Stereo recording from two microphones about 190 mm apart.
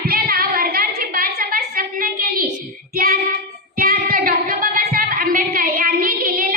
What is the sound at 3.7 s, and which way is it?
Child singing, 50° right (ahead or behind).